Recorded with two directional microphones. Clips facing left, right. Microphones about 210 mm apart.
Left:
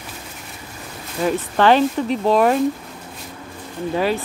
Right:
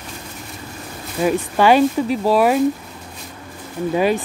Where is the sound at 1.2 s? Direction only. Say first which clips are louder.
Right 1 dB; 10° right (ahead or behind).